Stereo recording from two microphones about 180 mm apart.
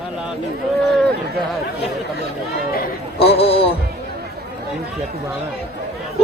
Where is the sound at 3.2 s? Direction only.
30° left (ahead or behind).